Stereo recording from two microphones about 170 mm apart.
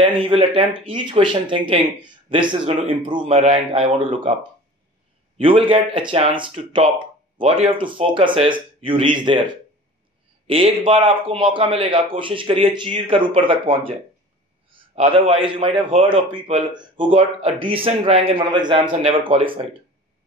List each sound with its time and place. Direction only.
0.0 s a man's voice: 35° right (ahead or behind)